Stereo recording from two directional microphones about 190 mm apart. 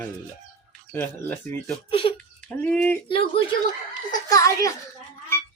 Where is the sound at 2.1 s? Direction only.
10° left (ahead or behind).